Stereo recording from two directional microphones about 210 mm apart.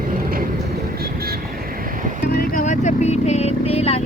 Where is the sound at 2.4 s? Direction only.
40° left (ahead or behind).